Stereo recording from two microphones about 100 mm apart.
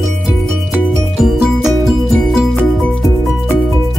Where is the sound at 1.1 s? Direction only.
5° right (ahead or behind).